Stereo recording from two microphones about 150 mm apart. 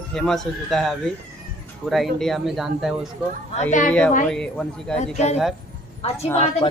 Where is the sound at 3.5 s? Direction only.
55° left (ahead or behind).